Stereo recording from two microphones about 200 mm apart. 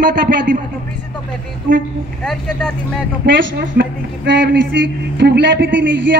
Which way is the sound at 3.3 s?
60° right (ahead or behind).